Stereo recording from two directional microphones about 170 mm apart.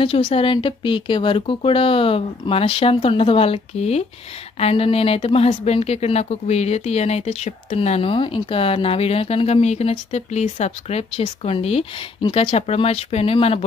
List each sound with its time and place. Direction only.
0.0 s a woman's voice: 35° left (ahead or behind)